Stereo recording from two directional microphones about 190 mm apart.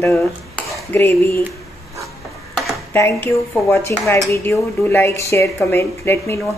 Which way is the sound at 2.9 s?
10° left (ahead or behind).